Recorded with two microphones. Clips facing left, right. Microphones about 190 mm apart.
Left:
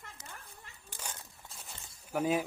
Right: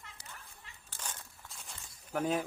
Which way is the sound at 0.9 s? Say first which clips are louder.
Left 1 dB; 10° left (ahead or behind).